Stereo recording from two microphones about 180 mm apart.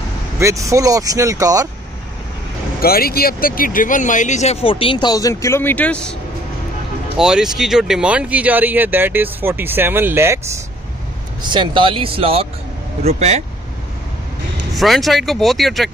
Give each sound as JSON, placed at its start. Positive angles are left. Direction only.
{"t": 0.4, "sound": "speech", "side_deg": -15}
{"t": 2.8, "sound": "speech", "side_deg": 55}
{"t": 7.2, "sound": "speech", "side_deg": -5}
{"t": 11.4, "sound": "speech", "side_deg": -25}
{"t": 14.8, "sound": "speech", "side_deg": 0}